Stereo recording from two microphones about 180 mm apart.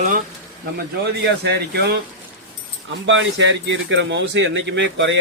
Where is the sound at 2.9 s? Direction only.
90° right.